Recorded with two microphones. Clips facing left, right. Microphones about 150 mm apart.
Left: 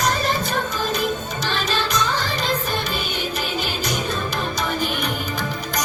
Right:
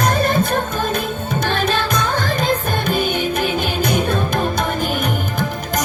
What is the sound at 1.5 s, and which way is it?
Music, 55° right (ahead or behind).